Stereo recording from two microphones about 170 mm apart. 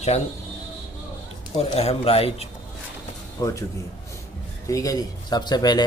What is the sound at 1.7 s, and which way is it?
Speech, 35° left (ahead or behind).